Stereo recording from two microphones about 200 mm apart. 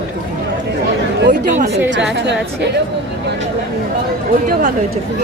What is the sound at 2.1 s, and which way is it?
Speech, 60° right (ahead or behind).